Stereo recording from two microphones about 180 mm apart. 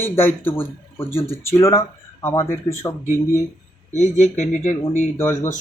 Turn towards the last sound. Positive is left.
turn(degrees=15)  # may be behind; listen again after turning